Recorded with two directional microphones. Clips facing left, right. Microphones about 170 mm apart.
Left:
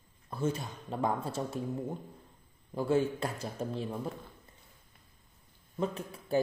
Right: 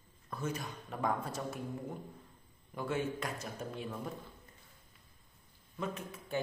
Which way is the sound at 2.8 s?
30° left (ahead or behind).